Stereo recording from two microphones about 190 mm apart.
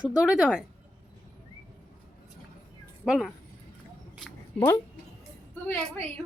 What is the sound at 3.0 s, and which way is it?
Speech, centre (ahead or behind).